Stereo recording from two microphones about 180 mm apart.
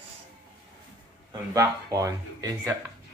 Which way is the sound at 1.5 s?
20° right (ahead or behind).